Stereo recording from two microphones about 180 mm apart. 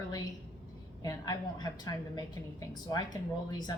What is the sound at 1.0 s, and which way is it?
A woman's voice, 20° left (ahead or behind).